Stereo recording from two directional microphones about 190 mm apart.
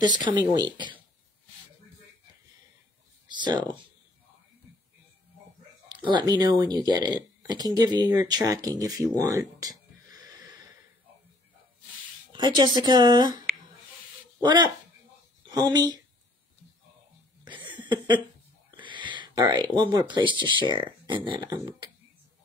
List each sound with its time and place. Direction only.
0.2 s speech: 20° right (ahead or behind)
3.3 s speech: 25° right (ahead or behind)
6.0 s speech: 20° right (ahead or behind)
12.3 s speech: 25° right (ahead or behind)
14.4 s speech: 25° right (ahead or behind)
17.5 s a sound: 25° right (ahead or behind)
18.8 s speech: 25° right (ahead or behind)